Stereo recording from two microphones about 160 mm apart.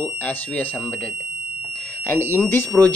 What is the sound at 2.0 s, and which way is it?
Speech, 15° left (ahead or behind).